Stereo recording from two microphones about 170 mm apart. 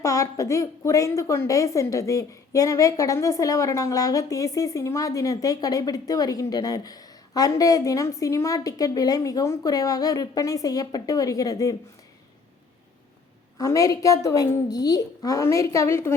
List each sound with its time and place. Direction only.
0.0 s a woman's voice: 20° left (ahead or behind)
13.6 s a woman's voice: 20° left (ahead or behind)